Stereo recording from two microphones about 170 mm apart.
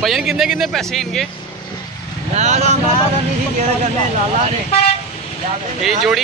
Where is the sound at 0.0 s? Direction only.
Centre (ahead or behind).